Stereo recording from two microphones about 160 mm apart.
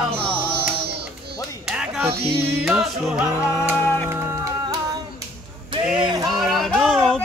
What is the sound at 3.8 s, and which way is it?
Music, 10° left (ahead or behind).